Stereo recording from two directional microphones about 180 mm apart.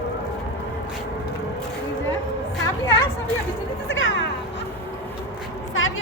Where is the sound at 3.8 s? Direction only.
90° left.